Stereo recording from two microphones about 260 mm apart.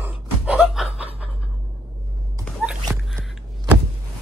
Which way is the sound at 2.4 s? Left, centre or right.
Centre.